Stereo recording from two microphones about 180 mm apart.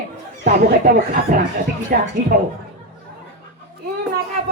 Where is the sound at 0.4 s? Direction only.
60° right (ahead or behind).